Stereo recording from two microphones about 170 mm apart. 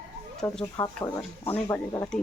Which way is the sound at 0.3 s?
5° left (ahead or behind).